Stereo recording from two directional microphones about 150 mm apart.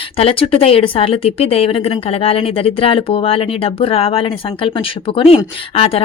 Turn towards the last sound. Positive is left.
turn(degrees=40)  # may be behind; listen again after turning